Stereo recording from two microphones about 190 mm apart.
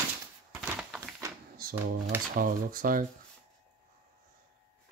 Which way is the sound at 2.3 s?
45° right (ahead or behind).